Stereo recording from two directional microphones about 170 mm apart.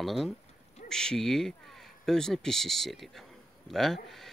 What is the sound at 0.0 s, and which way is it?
Speech, centre (ahead or behind).